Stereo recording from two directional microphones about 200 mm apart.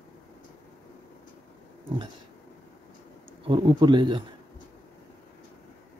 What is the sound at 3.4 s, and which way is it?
Speech, 20° right (ahead or behind).